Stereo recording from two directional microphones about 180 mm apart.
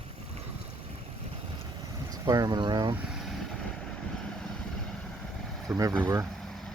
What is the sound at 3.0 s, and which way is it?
Vehicle, centre (ahead or behind).